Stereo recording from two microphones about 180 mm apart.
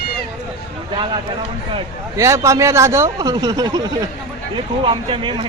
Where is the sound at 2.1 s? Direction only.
15° right (ahead or behind).